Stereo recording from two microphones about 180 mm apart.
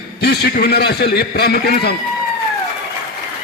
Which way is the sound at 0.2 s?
65° left (ahead or behind).